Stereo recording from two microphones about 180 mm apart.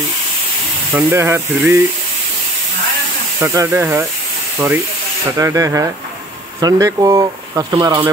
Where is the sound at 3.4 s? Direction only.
15° right (ahead or behind).